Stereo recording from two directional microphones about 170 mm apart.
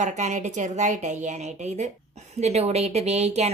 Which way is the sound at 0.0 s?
45° right (ahead or behind).